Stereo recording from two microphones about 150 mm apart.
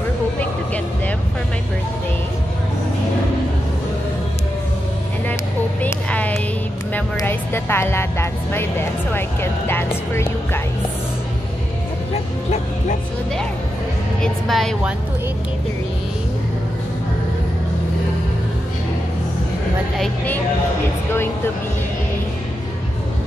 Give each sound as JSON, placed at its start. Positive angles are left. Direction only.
{"t": 5.8, "sound": "a sound", "side_deg": 10}
{"t": 6.9, "sound": "speech", "side_deg": 15}
{"t": 14.2, "sound": "speech", "side_deg": 5}